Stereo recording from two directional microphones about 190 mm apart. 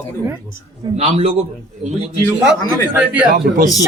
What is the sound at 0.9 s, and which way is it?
Speech, 35° right (ahead or behind).